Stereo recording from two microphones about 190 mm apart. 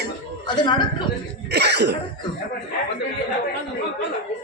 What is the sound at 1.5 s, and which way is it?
Cough, 60° right (ahead or behind).